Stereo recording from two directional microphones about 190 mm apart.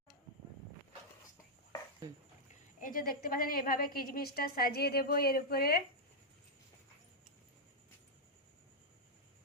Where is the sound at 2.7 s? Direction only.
45° left (ahead or behind).